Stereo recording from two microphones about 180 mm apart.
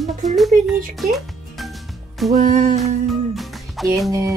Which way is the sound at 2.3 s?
45° right (ahead or behind).